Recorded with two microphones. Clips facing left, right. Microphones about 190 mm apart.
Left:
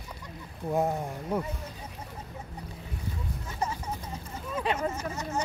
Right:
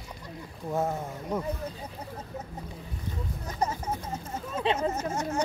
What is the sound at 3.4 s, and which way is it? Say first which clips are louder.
Speech: right 3 dB; 40° right (ahead or behind).